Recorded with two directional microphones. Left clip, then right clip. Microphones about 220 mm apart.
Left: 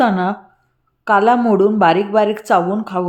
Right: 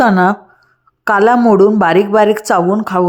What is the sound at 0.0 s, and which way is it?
Speech, 25° right (ahead or behind).